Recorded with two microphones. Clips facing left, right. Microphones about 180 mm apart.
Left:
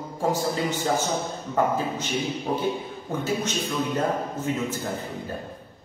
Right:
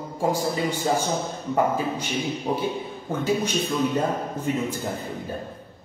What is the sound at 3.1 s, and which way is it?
A man's voice, 10° right (ahead or behind).